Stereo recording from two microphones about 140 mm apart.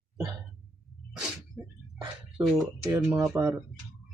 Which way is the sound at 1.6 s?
5° left (ahead or behind).